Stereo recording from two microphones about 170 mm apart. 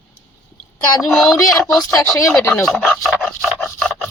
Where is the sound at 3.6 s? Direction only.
Centre (ahead or behind).